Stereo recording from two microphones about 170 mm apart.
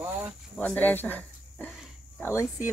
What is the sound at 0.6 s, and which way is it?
Speech, 10° left (ahead or behind).